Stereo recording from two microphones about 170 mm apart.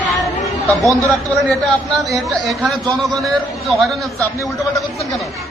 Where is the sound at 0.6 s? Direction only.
20° right (ahead or behind).